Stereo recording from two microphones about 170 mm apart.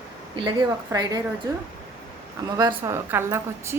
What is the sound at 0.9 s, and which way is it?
Speech, 20° right (ahead or behind).